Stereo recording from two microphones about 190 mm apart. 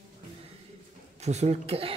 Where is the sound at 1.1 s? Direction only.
35° right (ahead or behind).